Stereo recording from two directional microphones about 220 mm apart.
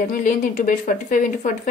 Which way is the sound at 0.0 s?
35° left (ahead or behind).